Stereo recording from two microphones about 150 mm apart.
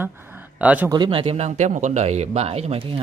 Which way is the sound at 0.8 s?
30° right (ahead or behind).